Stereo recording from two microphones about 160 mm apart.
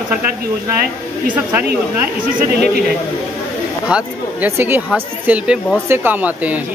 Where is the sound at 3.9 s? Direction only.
10° right (ahead or behind).